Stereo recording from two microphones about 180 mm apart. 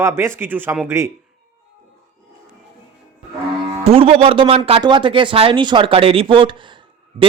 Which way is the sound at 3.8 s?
35° right (ahead or behind).